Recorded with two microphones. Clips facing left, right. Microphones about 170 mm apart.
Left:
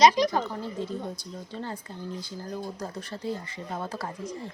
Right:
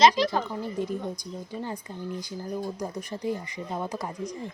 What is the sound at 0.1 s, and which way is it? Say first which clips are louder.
Speech: left 1 dB; 20° left (ahead or behind).